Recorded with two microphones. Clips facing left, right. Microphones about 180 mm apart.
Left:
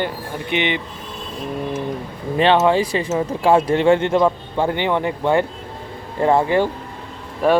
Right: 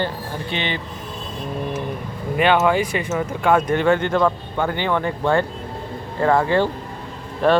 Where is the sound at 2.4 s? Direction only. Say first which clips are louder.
Left 2 dB; 30° left (ahead or behind).